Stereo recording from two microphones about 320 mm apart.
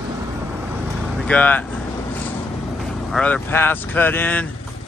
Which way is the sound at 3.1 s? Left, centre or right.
Centre.